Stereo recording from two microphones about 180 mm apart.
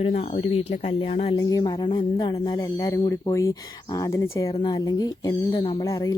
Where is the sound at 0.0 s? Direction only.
40° left (ahead or behind).